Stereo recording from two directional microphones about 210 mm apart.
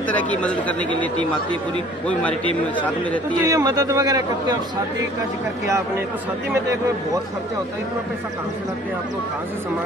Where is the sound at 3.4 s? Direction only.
15° right (ahead or behind).